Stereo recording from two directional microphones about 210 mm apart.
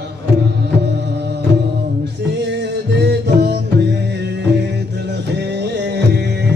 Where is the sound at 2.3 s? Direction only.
55° right (ahead or behind).